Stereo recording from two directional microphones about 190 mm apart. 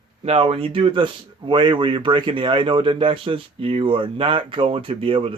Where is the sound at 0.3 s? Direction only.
30° right (ahead or behind).